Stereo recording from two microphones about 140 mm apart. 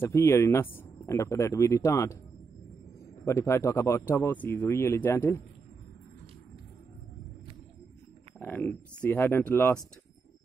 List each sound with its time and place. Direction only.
0.0 s speech: 20° left (ahead or behind)
3.3 s speech: 20° left (ahead or behind)
8.4 s speech: 15° left (ahead or behind)